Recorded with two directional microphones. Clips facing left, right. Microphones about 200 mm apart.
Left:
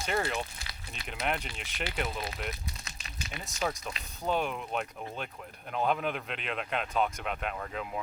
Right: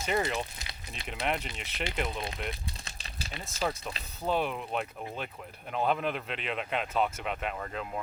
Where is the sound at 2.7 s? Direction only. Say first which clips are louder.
Right 1 dB; 30° right (ahead or behind).